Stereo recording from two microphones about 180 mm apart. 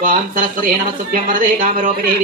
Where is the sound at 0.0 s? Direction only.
50° right (ahead or behind).